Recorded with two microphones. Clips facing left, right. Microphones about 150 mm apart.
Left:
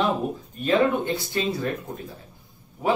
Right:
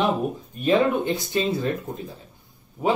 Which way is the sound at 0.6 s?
20° right (ahead or behind).